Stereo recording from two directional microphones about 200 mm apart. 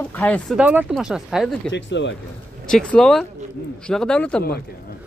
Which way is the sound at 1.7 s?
65° left (ahead or behind).